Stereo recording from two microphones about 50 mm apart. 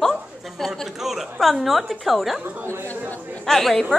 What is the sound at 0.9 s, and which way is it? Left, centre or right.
A woman's voice, centre.